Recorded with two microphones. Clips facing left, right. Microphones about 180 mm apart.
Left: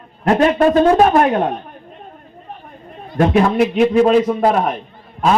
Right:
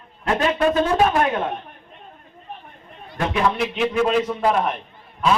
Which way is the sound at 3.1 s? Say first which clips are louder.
Left 8 dB; 45° left (ahead or behind).